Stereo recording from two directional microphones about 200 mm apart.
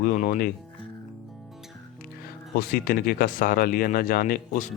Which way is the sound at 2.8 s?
45° left (ahead or behind).